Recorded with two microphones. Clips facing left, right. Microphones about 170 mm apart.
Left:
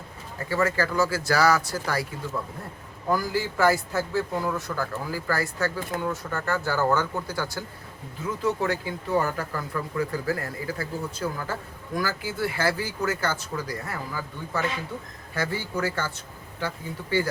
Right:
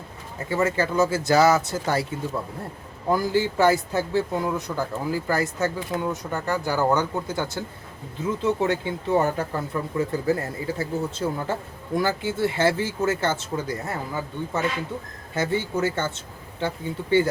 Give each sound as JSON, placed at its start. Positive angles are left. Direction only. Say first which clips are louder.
{"t": 0.3, "sound": "speech", "louder": "right 2 dB", "side_deg": -20}
{"t": 3.1, "sound": "speech", "louder": "right 4 dB", "side_deg": -20}